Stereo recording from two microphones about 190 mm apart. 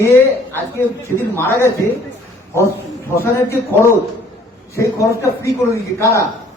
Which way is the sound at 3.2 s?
15° left (ahead or behind).